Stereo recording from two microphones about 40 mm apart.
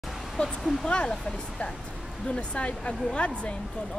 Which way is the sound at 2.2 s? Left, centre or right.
Left.